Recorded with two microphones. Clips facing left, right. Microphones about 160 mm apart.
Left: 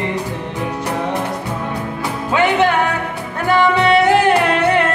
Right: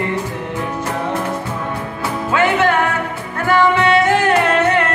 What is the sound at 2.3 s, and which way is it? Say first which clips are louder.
Music: left 1 dB; 15° left (ahead or behind).